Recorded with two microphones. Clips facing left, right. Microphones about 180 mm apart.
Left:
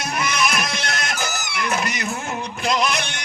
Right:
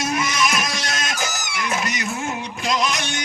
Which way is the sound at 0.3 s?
55° left (ahead or behind).